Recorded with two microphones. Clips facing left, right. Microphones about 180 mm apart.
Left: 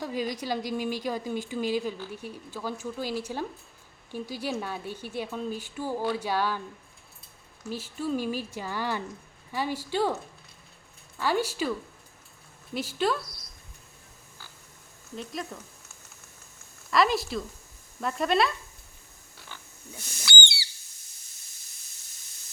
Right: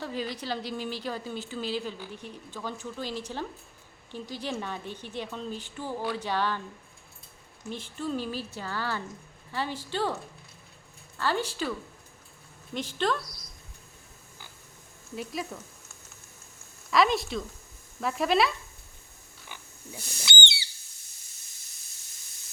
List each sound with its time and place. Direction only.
0.0 s a woman's voice: 10° left (ahead or behind)
7.7 s a woman's voice: 5° left (ahead or behind)
11.2 s a woman's voice: 10° left (ahead or behind)
12.7 s a woman's voice: 5° left (ahead or behind)
15.1 s speech: 5° right (ahead or behind)
16.9 s speech: centre (ahead or behind)
19.5 s pig: 20° right (ahead or behind)